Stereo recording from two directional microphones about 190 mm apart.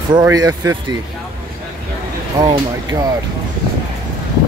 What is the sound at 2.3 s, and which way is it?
Speech, 20° right (ahead or behind).